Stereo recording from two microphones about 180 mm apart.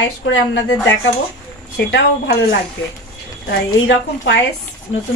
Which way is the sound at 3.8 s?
75° left (ahead or behind).